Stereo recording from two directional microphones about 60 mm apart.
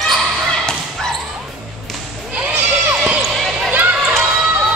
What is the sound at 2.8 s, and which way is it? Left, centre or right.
Basketball bounce, right.